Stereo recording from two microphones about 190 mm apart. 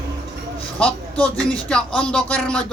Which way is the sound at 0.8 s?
5° left (ahead or behind).